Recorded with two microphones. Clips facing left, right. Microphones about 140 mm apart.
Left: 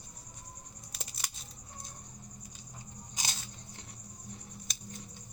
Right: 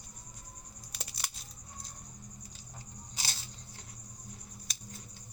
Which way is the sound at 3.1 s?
15° left (ahead or behind).